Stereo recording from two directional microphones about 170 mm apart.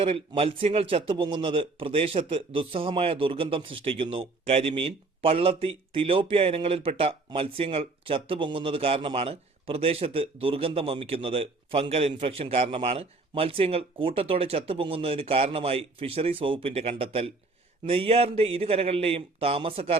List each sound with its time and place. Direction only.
0.0 s speech: 35° right (ahead or behind)